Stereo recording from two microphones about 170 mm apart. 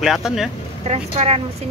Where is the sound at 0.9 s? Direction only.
35° right (ahead or behind).